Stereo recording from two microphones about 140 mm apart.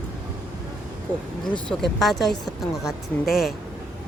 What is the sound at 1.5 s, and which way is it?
Speech, centre (ahead or behind).